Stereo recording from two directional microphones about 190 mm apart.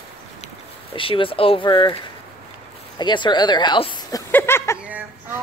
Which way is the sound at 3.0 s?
25° left (ahead or behind).